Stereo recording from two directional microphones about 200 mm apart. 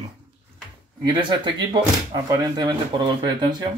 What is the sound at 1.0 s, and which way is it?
Speech, 25° right (ahead or behind).